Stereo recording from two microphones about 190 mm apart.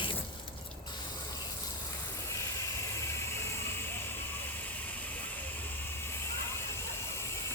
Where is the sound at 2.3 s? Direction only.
15° left (ahead or behind).